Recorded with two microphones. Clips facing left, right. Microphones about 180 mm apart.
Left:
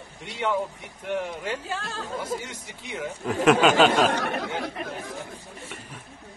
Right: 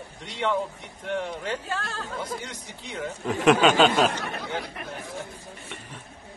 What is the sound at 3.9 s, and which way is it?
Speech, 85° left.